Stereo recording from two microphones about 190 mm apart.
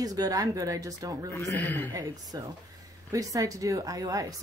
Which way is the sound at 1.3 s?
10° left (ahead or behind).